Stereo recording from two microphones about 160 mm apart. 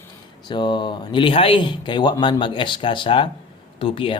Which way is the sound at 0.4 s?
30° left (ahead or behind).